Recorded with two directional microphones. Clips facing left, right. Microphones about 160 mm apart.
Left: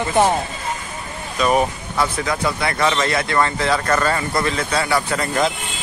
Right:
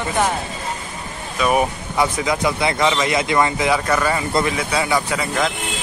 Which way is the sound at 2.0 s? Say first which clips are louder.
Right 2 dB; 15° right (ahead or behind).